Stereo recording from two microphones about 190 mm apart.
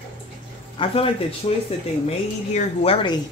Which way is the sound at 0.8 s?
25° left (ahead or behind).